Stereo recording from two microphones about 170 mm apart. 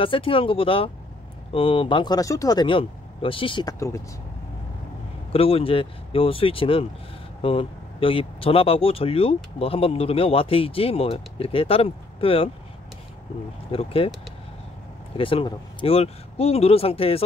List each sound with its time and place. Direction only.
0.0 s speech: 30° left (ahead or behind)
5.3 s speech: 35° left (ahead or behind)
13.7 s speech: 35° left (ahead or behind)
15.1 s speech: 30° left (ahead or behind)